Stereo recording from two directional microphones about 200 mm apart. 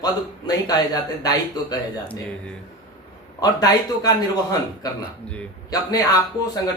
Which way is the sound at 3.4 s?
20° left (ahead or behind).